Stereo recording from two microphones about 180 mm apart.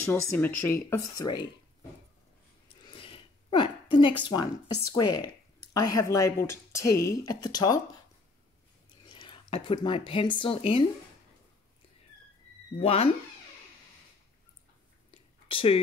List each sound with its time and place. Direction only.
0.1 s speech: 10° left (ahead or behind)
2.8 s a sound: 30° left (ahead or behind)
4.2 s speech: 25° left (ahead or behind)
9.0 s speech: 25° left (ahead or behind)
12.7 s speech: 35° left (ahead or behind)
15.5 s speech: 30° left (ahead or behind)